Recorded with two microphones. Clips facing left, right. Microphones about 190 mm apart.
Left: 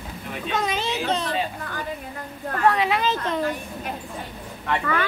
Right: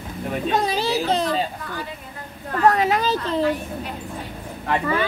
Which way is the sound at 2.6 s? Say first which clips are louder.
Right 3 dB; 40° right (ahead or behind).